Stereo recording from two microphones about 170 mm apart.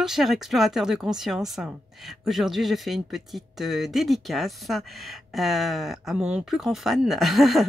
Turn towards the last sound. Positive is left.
turn(degrees=0)  # may be behind; listen again after turning